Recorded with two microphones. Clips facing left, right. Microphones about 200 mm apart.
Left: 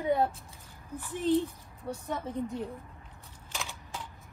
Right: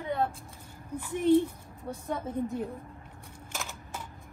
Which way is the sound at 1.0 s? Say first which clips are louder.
Right 4 dB; 15° right (ahead or behind).